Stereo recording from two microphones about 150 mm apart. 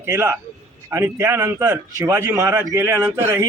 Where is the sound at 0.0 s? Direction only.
15° right (ahead or behind).